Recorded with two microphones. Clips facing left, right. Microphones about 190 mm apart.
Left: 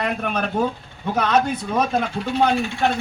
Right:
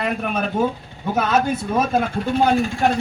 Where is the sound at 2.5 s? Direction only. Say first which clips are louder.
Right 3 dB; 45° right (ahead or behind).